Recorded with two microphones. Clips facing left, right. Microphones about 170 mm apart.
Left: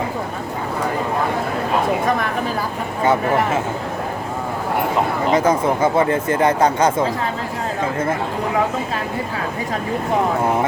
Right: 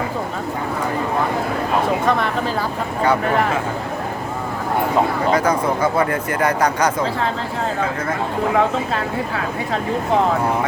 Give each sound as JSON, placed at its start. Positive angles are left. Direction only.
{"t": 3.0, "sound": "speech", "side_deg": 20}
{"t": 5.3, "sound": "speech", "side_deg": 20}